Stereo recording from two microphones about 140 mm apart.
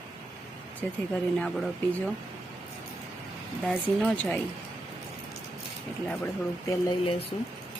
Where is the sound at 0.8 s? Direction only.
10° left (ahead or behind).